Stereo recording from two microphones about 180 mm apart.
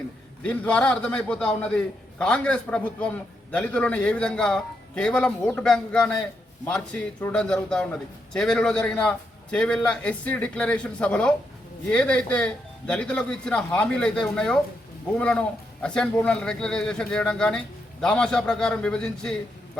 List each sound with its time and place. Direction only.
0.4 s a man's voice: 5° left (ahead or behind)